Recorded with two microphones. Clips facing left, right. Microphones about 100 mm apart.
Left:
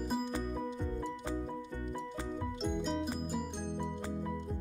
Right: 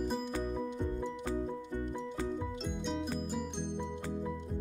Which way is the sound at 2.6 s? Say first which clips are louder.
Left 2 dB; 5° left (ahead or behind).